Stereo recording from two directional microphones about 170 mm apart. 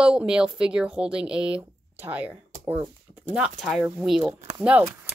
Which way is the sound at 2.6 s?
10° right (ahead or behind).